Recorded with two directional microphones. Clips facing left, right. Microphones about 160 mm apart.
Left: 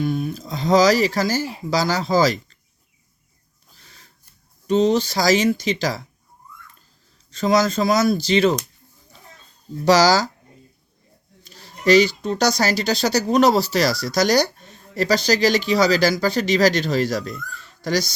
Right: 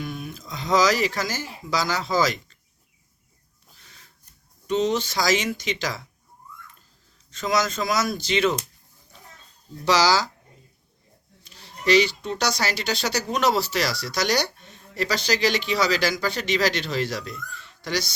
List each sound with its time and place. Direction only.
0.0 s speech: 35° left (ahead or behind)
3.8 s a sound: 35° left (ahead or behind)
4.6 s speech: 35° left (ahead or behind)
7.3 s speech: 35° left (ahead or behind)
9.8 s speech: 45° left (ahead or behind)
11.4 s speech: 40° left (ahead or behind)